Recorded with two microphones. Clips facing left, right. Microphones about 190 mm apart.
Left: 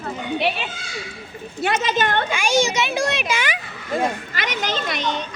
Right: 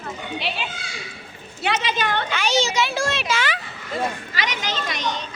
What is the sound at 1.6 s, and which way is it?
Speech, 45° left (ahead or behind).